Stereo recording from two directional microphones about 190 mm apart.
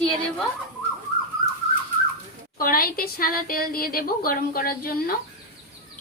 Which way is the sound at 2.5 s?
50° left (ahead or behind).